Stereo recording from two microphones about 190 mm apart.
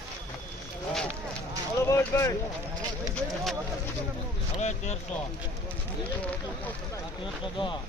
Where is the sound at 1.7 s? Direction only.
15° left (ahead or behind).